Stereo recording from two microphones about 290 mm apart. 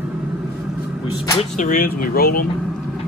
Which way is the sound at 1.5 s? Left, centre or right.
Left.